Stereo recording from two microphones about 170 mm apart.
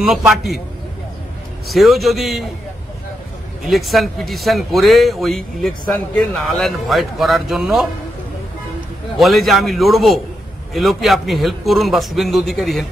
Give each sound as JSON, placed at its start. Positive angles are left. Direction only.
{"t": 0.3, "sound": "speech", "side_deg": 0}
{"t": 1.7, "sound": "speech", "side_deg": 0}
{"t": 3.6, "sound": "speech", "side_deg": 0}
{"t": 9.2, "sound": "speech", "side_deg": 0}